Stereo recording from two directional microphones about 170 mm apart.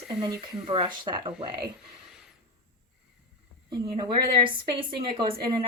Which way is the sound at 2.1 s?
5° right (ahead or behind).